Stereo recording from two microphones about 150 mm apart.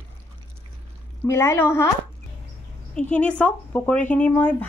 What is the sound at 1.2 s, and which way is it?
Speech, 20° left (ahead or behind).